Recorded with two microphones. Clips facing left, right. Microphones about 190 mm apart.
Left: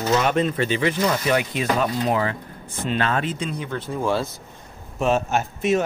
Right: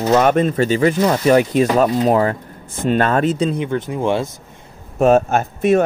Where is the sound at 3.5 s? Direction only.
20° right (ahead or behind).